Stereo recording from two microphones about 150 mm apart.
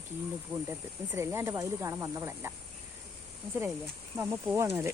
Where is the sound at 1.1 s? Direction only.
15° right (ahead or behind).